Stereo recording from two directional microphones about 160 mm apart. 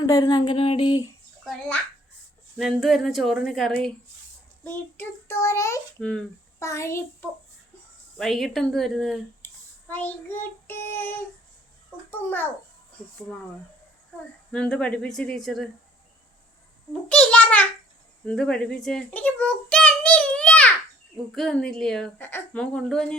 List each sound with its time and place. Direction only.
0.0 s speech: 25° left (ahead or behind)
1.5 s a woman's voice: 5° left (ahead or behind)
6.0 s a woman's voice: 5° left (ahead or behind)
6.6 s a child's voice: 20° left (ahead or behind)
8.2 s a woman's voice: centre (ahead or behind)
12.1 s a child's voice: 10° left (ahead or behind)
14.5 s a woman's voice: 5° left (ahead or behind)
17.1 s a child's voice: 5° left (ahead or behind)